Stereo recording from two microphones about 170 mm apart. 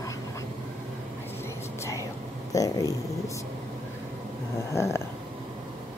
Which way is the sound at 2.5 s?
20° left (ahead or behind).